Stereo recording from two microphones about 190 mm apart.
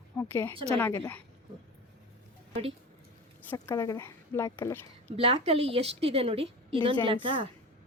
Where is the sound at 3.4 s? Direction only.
10° left (ahead or behind).